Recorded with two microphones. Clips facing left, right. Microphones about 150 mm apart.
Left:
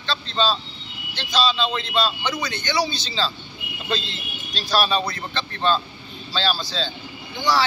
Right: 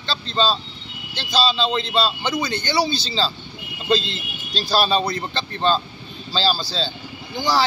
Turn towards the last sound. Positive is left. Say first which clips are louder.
# right 1 dB
turn(degrees=-35)  # may be behind; listen again after turning